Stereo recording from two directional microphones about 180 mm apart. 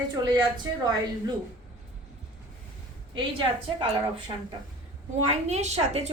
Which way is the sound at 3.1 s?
30° right (ahead or behind).